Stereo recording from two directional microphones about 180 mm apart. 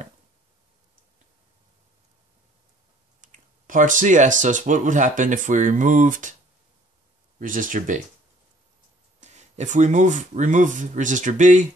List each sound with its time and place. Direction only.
3.2 s speech: 45° right (ahead or behind)
7.3 s speech: 45° right (ahead or behind)
9.2 s speech: 40° right (ahead or behind)